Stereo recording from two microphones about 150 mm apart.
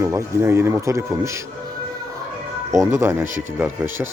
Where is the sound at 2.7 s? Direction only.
20° right (ahead or behind).